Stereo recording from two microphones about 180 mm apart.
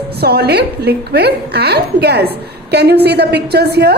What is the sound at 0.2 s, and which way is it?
A woman's voice, 65° right (ahead or behind).